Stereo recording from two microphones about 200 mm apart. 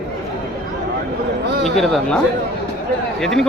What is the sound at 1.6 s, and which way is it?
Speech, centre (ahead or behind).